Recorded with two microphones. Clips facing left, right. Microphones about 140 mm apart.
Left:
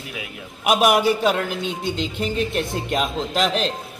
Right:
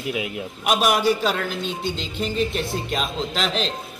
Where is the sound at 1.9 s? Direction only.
55° left (ahead or behind).